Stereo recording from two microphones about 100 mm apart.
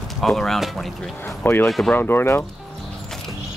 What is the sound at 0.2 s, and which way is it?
Speech, centre (ahead or behind).